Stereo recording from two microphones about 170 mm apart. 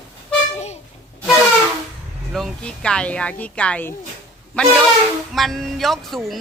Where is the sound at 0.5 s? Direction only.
40° left (ahead or behind).